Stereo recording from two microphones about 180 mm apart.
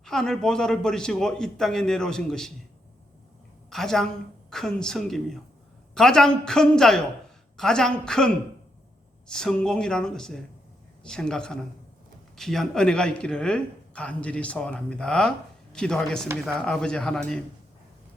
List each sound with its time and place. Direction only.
0.0 s speech: 5° left (ahead or behind)
3.7 s a woman's voice: centre (ahead or behind)